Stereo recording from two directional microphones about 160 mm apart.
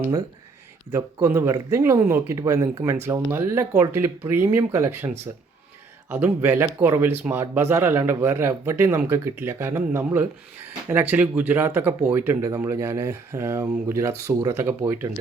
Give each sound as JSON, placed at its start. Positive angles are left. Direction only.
{"t": 0.9, "sound": "speech", "side_deg": -15}